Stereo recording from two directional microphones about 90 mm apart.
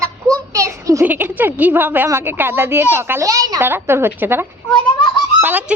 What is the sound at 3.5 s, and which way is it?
A woman's voice, 25° right (ahead or behind).